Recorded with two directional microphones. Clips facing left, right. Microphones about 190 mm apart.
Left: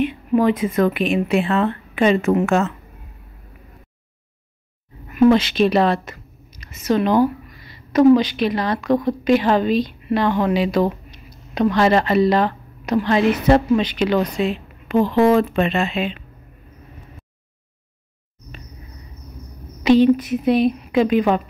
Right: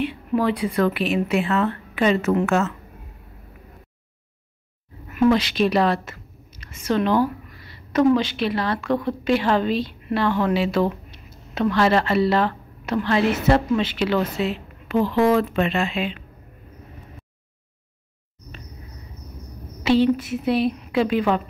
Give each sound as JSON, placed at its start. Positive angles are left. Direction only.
{"t": 0.0, "sound": "a sound", "side_deg": 20}
{"t": 0.7, "sound": "a woman's voice", "side_deg": 15}
{"t": 5.1, "sound": "a woman's voice", "side_deg": 25}
{"t": 6.5, "sound": "a woman's voice", "side_deg": 15}
{"t": 19.8, "sound": "a woman's voice", "side_deg": 15}